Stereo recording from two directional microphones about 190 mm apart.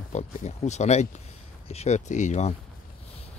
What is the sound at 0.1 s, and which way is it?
Speech, 35° left (ahead or behind).